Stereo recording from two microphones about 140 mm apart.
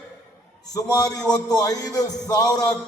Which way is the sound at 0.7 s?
25° left (ahead or behind).